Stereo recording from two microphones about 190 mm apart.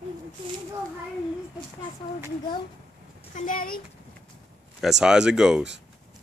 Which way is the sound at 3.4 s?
45° left (ahead or behind).